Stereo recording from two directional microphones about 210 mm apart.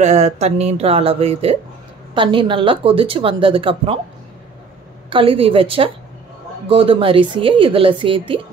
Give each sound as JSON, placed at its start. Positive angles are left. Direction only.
{"t": 0.0, "sound": "speech", "side_deg": -30}
{"t": 5.1, "sound": "speech", "side_deg": -25}